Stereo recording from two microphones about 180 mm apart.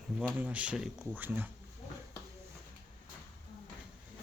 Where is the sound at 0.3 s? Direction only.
10° right (ahead or behind).